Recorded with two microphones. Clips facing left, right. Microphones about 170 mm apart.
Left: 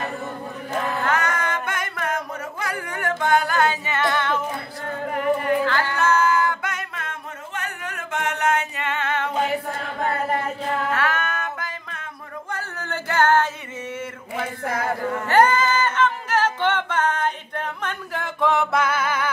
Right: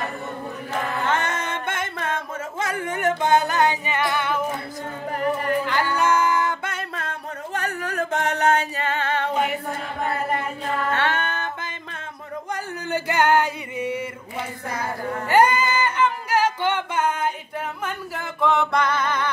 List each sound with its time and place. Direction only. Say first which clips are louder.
1.0 s singing: even; 25° right (ahead or behind)
5.7 s singing: even; 15° right (ahead or behind); by 9.3 s 30° right (ahead or behind)
10.9 s music: even; 30° right (ahead or behind)
12.4 s a sound: right 2 dB; 15° right (ahead or behind)
15.2 s a capella: even; 10° right (ahead or behind); by 19.3 s 5° left (ahead or behind)